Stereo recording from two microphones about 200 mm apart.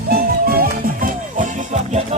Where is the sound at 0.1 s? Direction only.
50° right (ahead or behind).